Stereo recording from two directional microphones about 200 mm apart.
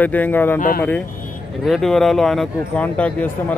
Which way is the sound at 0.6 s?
45° left (ahead or behind).